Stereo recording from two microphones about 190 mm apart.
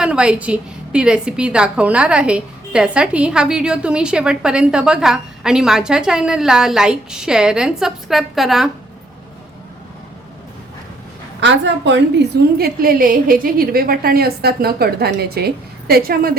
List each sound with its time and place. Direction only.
0.0 s a woman's voice: 5° right (ahead or behind)
11.3 s a woman's voice: 70° right (ahead or behind); by 16.3 s 50° right (ahead or behind)